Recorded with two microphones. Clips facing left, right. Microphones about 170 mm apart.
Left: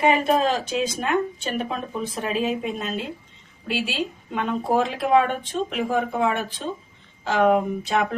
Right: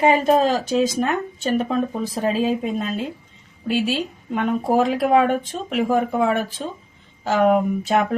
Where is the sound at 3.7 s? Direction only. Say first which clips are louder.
Right 5 dB; 40° right (ahead or behind).